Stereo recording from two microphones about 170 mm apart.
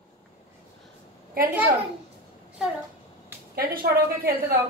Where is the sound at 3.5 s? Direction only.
60° right (ahead or behind).